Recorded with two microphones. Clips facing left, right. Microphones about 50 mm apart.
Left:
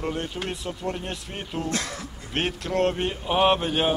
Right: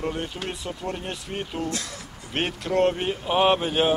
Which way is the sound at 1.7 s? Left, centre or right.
Left.